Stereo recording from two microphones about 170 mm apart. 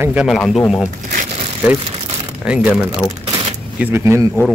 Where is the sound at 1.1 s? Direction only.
45° right (ahead or behind).